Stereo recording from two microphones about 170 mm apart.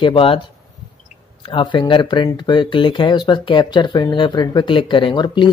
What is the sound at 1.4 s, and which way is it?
Speech, 30° left (ahead or behind).